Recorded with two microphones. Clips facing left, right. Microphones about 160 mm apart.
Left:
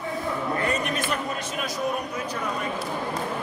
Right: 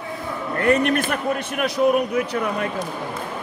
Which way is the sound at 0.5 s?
60° right (ahead or behind).